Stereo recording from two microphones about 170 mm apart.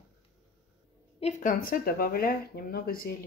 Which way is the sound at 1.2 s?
45° left (ahead or behind).